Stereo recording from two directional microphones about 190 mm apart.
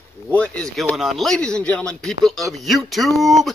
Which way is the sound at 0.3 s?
5° left (ahead or behind).